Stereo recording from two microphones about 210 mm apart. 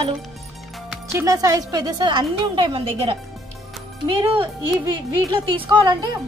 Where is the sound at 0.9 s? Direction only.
15° right (ahead or behind).